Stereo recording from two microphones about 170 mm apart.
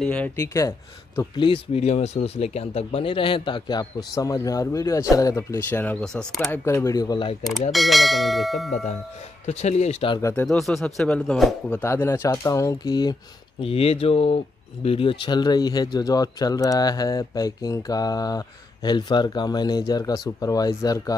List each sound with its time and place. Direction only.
0.0 s speech: 10° left (ahead or behind)
1.4 s speech: 35° left (ahead or behind); by 6.6 s 5° left (ahead or behind)
6.6 s speech: 15° left (ahead or behind)
7.7 s speech: centre (ahead or behind)
9.5 s speech: 40° left (ahead or behind)
10.2 s speech: 15° left (ahead or behind)
10.5 s speech: centre (ahead or behind)
11.8 s speech: 15° left (ahead or behind)
13.6 s speech: 35° left (ahead or behind)